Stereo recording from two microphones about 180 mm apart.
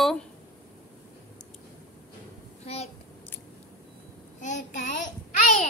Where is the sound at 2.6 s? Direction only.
35° left (ahead or behind).